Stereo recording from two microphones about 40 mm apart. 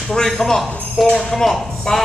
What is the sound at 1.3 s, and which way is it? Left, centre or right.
Music, centre.